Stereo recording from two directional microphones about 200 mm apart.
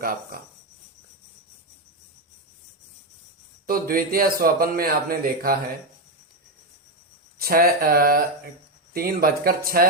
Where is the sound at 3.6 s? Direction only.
45° right (ahead or behind).